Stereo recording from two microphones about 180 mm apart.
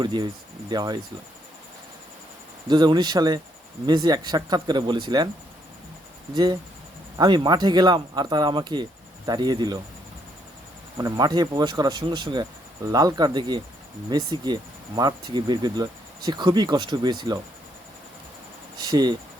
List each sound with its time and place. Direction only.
0.0 s speech: 25° right (ahead or behind)
2.6 s speech: 25° right (ahead or behind)
6.3 s speech: 20° right (ahead or behind)
10.9 s speech: 20° right (ahead or behind)
18.8 s speech: 20° right (ahead or behind)